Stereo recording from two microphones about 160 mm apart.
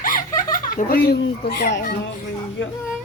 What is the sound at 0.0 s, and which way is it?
Speech, 60° left (ahead or behind).